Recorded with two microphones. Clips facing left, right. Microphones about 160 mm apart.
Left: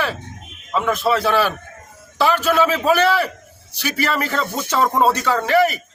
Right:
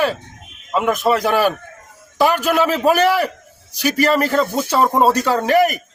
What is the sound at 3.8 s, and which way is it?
Speech, 40° right (ahead or behind).